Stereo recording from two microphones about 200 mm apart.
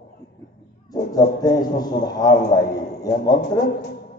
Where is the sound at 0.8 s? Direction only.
20° left (ahead or behind).